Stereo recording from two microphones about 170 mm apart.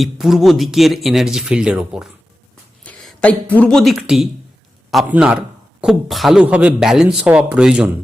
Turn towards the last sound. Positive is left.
turn(degrees=-5)  # may be behind; listen again after turning